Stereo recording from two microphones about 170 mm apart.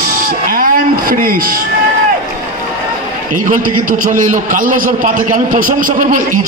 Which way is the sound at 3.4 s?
55° right (ahead or behind).